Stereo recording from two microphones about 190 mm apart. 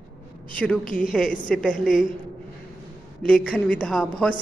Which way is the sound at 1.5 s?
5° left (ahead or behind).